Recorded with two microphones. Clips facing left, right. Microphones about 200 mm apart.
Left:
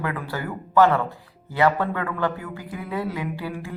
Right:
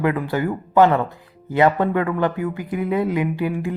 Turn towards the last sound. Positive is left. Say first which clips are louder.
# right 8 dB
turn(degrees=-20)  # may be behind; listen again after turning